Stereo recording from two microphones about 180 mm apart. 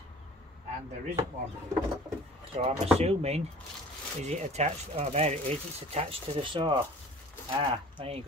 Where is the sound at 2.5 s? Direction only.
40° right (ahead or behind).